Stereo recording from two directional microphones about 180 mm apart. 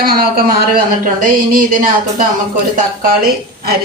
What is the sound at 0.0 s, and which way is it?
A woman's voice, 55° right (ahead or behind).